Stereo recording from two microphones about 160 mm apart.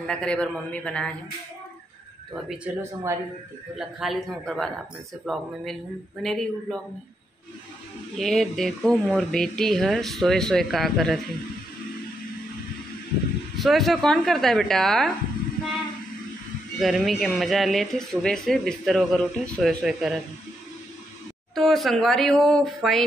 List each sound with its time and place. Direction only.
0.0 s a man's voice: 5° left (ahead or behind)
2.3 s speech: centre (ahead or behind)
2.8 s speech: 15° right (ahead or behind)
3.7 s speech: centre (ahead or behind)
8.2 s speech: centre (ahead or behind)
13.6 s speech: centre (ahead or behind)
16.8 s speech: centre (ahead or behind)
21.5 s speech: centre (ahead or behind)